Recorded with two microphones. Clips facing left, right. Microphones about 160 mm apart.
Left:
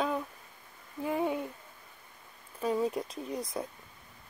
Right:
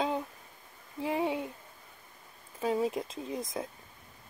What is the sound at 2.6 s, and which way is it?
Speech, 20° right (ahead or behind).